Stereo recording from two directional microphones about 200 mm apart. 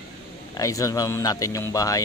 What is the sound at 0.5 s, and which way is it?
Speech, 15° left (ahead or behind).